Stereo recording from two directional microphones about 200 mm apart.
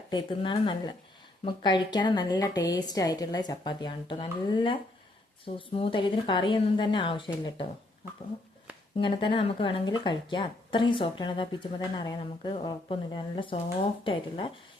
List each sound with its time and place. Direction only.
0.1 s a woman's voice: 25° left (ahead or behind)
9.0 s a woman's voice: 25° left (ahead or behind)